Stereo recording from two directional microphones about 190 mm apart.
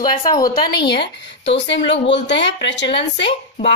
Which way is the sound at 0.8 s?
60° left (ahead or behind).